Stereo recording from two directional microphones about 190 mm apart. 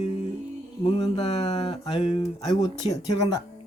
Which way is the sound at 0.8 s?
30° left (ahead or behind).